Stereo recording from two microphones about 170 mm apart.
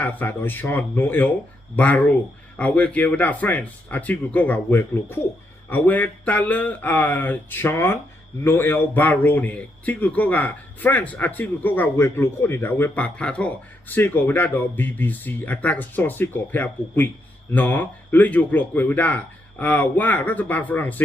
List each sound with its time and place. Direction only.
0.0 s speech: 10° left (ahead or behind)